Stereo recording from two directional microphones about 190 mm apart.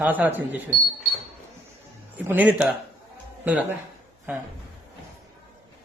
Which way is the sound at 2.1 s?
10° right (ahead or behind).